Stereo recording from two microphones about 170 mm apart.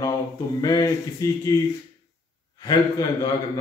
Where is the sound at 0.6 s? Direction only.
20° left (ahead or behind).